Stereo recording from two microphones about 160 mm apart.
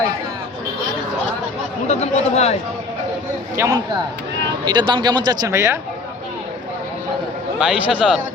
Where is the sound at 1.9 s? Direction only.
45° left (ahead or behind).